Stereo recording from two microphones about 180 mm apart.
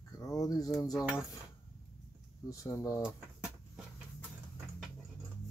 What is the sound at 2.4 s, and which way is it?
Speech, 15° left (ahead or behind).